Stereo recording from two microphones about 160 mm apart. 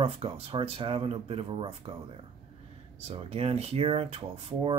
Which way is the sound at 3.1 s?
40° right (ahead or behind).